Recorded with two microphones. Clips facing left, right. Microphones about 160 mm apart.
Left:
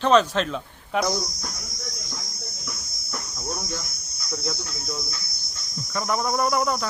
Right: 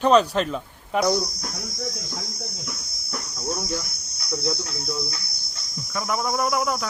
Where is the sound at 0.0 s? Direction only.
5° right (ahead or behind).